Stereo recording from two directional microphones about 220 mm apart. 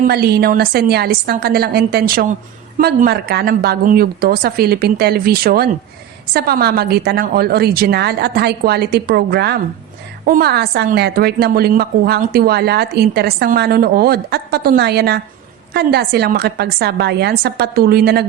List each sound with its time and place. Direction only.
0.1 s a woman's voice: 45° right (ahead or behind)